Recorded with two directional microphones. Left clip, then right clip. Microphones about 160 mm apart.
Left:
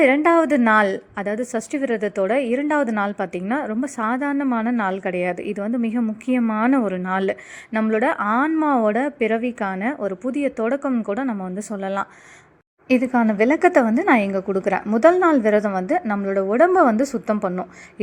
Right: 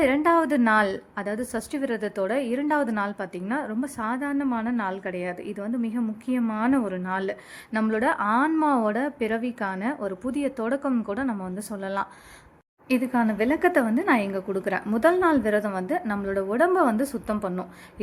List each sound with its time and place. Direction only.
0.0 s a woman's voice: 25° left (ahead or behind)
12.9 s a woman's voice: 30° left (ahead or behind)